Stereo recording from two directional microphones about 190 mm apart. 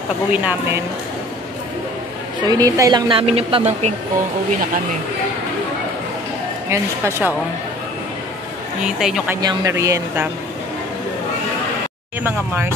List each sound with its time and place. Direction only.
0.3 s speech: 5° right (ahead or behind)
2.4 s a woman's voice: 20° right (ahead or behind)
6.7 s speech: 15° right (ahead or behind)
8.8 s speech: 5° right (ahead or behind)
9.4 s speech: 20° right (ahead or behind)
12.2 s speech: 10° right (ahead or behind)